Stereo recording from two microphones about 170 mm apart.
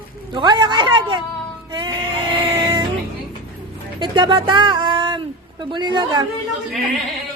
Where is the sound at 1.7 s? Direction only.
30° right (ahead or behind).